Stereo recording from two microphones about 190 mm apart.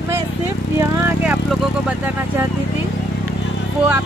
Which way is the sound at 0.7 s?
10° right (ahead or behind).